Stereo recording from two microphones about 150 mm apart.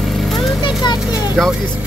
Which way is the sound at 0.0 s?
Centre (ahead or behind).